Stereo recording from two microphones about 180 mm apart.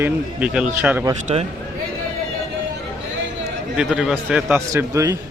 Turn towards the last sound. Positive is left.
turn(degrees=-15)  # may be behind; listen again after turning